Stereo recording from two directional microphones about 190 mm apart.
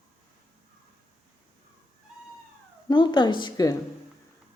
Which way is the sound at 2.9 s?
25° left (ahead or behind).